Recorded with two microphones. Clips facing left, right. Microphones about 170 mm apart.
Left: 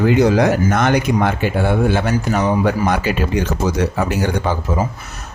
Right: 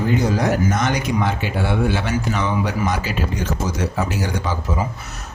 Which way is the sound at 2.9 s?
60° left (ahead or behind).